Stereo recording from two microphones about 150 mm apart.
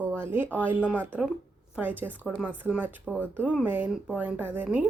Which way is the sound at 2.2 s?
Centre (ahead or behind).